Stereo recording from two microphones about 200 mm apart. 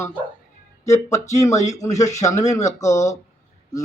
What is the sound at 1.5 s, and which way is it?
Speech, 35° left (ahead or behind).